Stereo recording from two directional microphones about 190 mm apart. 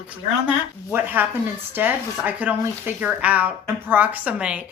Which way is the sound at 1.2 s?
10° right (ahead or behind).